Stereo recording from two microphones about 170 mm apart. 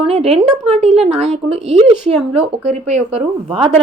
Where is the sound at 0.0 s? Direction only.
35° right (ahead or behind).